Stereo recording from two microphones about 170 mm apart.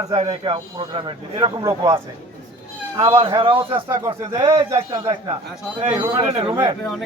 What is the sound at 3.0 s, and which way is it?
Speech, 30° right (ahead or behind).